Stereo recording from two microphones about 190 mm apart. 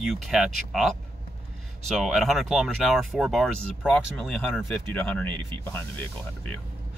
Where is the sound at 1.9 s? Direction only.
Centre (ahead or behind).